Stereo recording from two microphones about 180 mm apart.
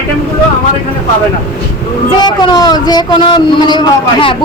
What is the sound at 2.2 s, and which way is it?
A man's voice, 25° left (ahead or behind).